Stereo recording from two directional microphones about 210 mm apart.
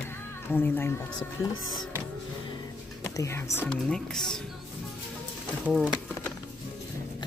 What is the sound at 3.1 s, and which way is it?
Speech, 15° left (ahead or behind).